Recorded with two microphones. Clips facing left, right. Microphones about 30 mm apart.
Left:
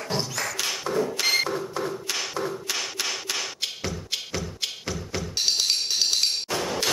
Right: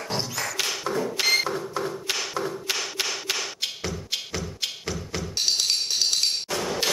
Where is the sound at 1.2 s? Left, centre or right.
Centre.